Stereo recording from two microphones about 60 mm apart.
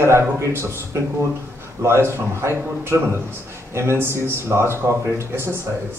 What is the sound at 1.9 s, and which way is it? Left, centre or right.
Speech, right.